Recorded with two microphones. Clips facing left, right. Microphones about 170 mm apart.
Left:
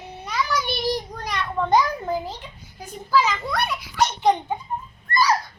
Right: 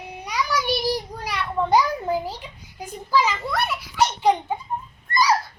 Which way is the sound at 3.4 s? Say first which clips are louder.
Even; centre (ahead or behind).